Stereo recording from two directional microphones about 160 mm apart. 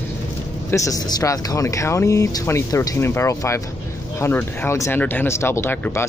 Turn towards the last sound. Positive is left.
turn(degrees=15)  # may be behind; listen again after turning